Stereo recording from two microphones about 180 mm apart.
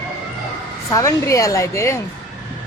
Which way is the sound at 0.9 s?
15° left (ahead or behind).